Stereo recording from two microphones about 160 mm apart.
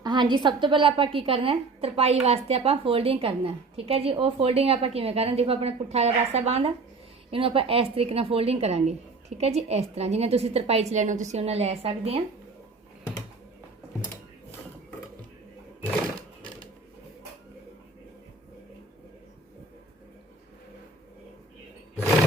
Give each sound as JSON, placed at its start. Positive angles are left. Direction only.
{"t": 0.0, "sound": "a woman's voice", "side_deg": -30}